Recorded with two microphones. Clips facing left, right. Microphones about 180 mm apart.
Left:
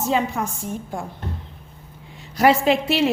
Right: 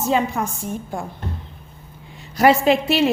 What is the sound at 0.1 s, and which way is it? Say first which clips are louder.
Speech: right 2 dB; 50° right (ahead or behind).